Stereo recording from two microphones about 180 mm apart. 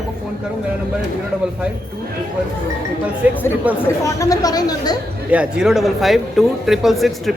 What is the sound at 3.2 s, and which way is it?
Speech, 10° right (ahead or behind).